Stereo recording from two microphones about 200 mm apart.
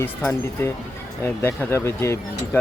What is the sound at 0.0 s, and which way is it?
Speech, 10° left (ahead or behind).